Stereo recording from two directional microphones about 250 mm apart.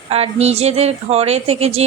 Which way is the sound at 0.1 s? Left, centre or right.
Right.